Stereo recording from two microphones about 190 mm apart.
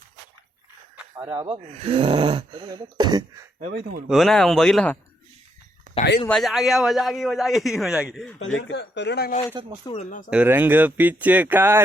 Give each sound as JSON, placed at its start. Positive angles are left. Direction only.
{"t": 1.1, "sound": "speech", "side_deg": -20}
{"t": 1.7, "sound": "a sound", "side_deg": -30}
{"t": 3.6, "sound": "speech", "side_deg": -50}
{"t": 4.1, "sound": "a man's voice", "side_deg": 0}
{"t": 6.2, "sound": "a man's voice", "side_deg": 0}
{"t": 8.5, "sound": "speech", "side_deg": 70}
{"t": 9.6, "sound": "a sound", "side_deg": -25}
{"t": 10.0, "sound": "speech", "side_deg": 45}
{"t": 10.2, "sound": "speech", "side_deg": -5}